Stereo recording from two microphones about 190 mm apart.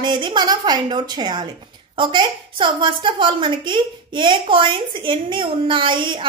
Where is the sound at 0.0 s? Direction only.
25° right (ahead or behind).